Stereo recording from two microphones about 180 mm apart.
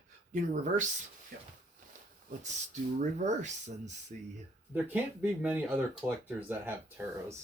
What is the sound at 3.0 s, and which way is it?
Speech, 40° right (ahead or behind).